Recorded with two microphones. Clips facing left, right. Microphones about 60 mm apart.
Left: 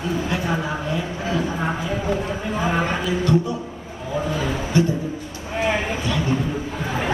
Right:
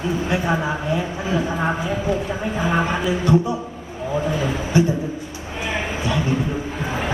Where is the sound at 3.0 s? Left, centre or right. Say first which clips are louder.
Right 2 dB; centre.